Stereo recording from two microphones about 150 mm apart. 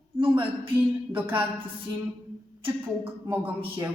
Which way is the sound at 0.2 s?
35° right (ahead or behind).